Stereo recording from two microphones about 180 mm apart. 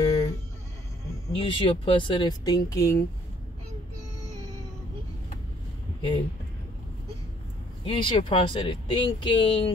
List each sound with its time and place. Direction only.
0.0 s a sound: 35° left (ahead or behind)
1.3 s speech: 30° left (ahead or behind)
7.8 s speech: 30° left (ahead or behind)